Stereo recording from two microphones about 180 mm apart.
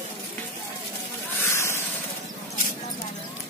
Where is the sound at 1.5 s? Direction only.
15° left (ahead or behind).